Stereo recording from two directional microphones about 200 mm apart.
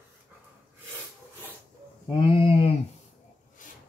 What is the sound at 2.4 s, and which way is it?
Speech, 25° left (ahead or behind).